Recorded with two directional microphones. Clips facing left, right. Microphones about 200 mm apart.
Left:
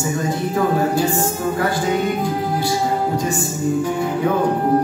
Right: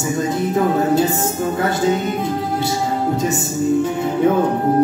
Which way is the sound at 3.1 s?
20° right (ahead or behind).